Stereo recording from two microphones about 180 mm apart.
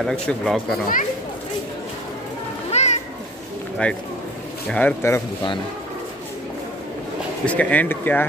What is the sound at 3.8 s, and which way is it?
Speech, 5° left (ahead or behind).